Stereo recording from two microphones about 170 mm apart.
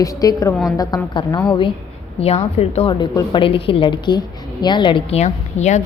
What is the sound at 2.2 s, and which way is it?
A woman's voice, 35° left (ahead or behind).